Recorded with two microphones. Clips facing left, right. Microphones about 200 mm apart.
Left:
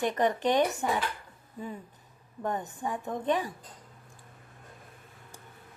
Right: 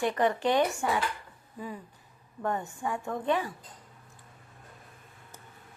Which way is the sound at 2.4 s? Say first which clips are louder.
Right 1 dB; 20° left (ahead or behind).